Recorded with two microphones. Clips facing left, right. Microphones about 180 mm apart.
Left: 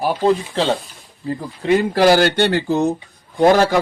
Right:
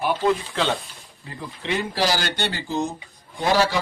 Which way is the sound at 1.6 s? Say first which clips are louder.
Left 9 dB; 50° left (ahead or behind).